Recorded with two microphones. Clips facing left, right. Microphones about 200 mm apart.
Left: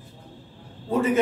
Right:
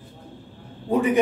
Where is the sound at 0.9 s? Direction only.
15° right (ahead or behind).